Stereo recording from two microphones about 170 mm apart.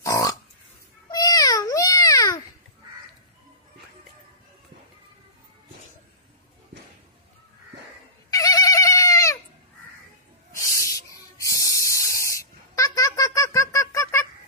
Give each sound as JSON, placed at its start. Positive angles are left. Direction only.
{"t": 0.0, "sound": "a sound", "side_deg": 20}
{"t": 8.3, "sound": "goat", "side_deg": 20}
{"t": 10.7, "sound": "spray", "side_deg": 20}